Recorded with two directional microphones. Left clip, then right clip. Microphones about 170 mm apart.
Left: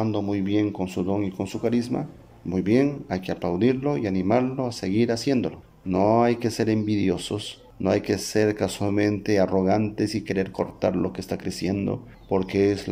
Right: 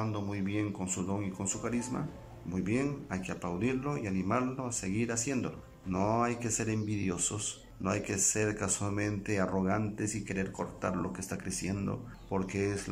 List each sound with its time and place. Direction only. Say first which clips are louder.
0.0 s speech: left 11 dB; 40° left (ahead or behind)
5.3 s speech: left 11 dB; 30° left (ahead or behind)
6.2 s speech: left 11 dB; 50° left (ahead or behind)
8.6 s speech: left 9 dB; 25° left (ahead or behind)
8.9 s speech: left 12 dB; 45° left (ahead or behind)
9.5 s speech: left 11 dB; 35° left (ahead or behind)
11.7 s speech: left 10 dB; 30° left (ahead or behind)